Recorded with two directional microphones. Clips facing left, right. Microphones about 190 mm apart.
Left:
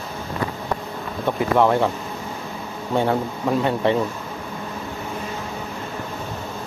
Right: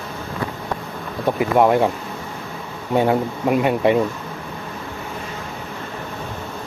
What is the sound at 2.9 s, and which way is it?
Speech, 15° right (ahead or behind).